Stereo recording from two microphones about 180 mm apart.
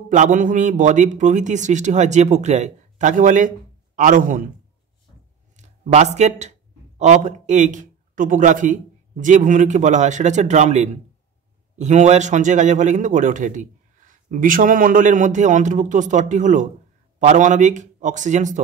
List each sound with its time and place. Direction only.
0.1 s a man's voice: 45° right (ahead or behind)
5.6 s a man's voice: 40° right (ahead or behind)